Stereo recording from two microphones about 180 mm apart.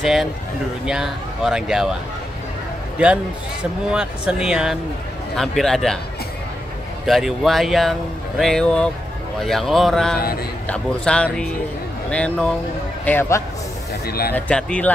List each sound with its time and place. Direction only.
0.0 s speech: centre (ahead or behind)
3.9 s speech: 5° right (ahead or behind)
7.1 s speech: centre (ahead or behind)
14.0 s speech: 55° left (ahead or behind)
14.3 s speech: 5° left (ahead or behind)